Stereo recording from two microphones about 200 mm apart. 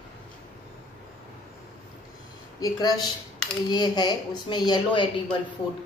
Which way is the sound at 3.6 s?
20° left (ahead or behind).